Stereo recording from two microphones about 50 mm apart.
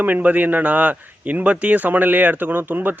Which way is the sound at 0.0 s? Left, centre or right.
Right.